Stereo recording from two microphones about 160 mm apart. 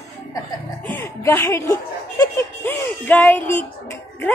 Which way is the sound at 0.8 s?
15° left (ahead or behind).